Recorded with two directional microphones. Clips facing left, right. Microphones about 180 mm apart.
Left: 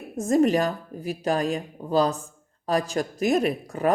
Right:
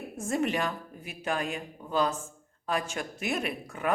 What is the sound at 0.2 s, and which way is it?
Speech, 40° left (ahead or behind).